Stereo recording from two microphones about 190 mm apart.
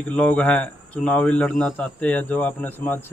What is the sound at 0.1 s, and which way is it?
Speech, 10° left (ahead or behind).